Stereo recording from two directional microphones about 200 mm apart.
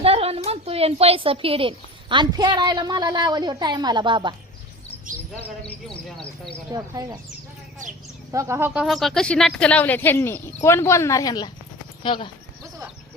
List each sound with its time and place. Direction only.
0.0 s a woman's voice: 30° right (ahead or behind)
6.7 s speech: 15° right (ahead or behind)
8.3 s speech: 15° right (ahead or behind); by 12.3 s 25° left (ahead or behind)